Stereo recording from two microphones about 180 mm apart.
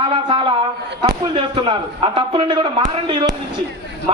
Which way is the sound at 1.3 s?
30° right (ahead or behind).